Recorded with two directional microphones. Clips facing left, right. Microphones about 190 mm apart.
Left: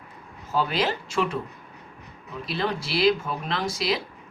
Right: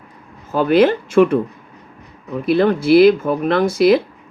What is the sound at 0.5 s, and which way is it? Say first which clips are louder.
Speech: right 12 dB; 55° right (ahead or behind).